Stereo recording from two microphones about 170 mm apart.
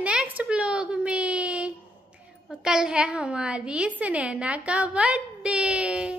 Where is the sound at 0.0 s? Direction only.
5° right (ahead or behind).